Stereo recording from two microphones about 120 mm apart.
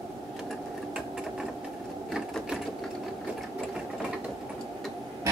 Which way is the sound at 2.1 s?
Centre (ahead or behind).